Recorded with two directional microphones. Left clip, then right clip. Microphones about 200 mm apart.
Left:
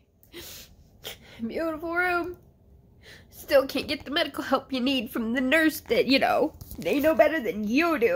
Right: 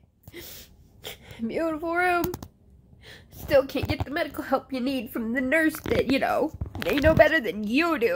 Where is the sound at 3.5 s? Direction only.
20° right (ahead or behind).